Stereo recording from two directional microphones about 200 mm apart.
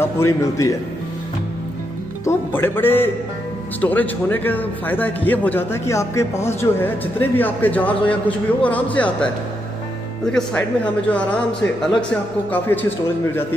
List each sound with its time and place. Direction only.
0.0 s a man's voice: 15° left (ahead or behind)
2.2 s a man's voice: 10° left (ahead or behind)
11.1 s a man's voice: 5° left (ahead or behind)